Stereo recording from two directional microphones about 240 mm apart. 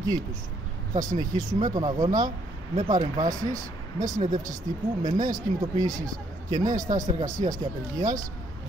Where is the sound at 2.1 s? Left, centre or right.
Right.